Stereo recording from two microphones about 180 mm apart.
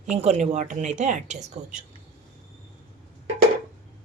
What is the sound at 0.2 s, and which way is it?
A woman's voice, 40° right (ahead or behind).